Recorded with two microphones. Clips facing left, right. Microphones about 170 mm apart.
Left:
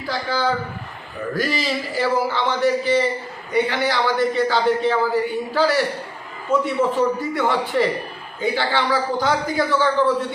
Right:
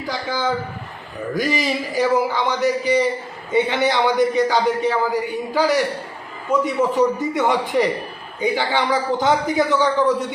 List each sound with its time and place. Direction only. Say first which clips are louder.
0.1 s a man's voice: left 1 dB; 20° right (ahead or behind)